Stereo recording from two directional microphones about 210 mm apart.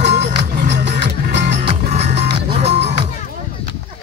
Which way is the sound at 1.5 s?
35° right (ahead or behind).